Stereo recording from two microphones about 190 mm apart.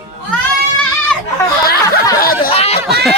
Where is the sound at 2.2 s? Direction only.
50° left (ahead or behind).